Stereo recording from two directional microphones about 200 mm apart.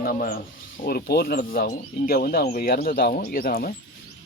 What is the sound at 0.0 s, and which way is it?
Speech, 45° left (ahead or behind).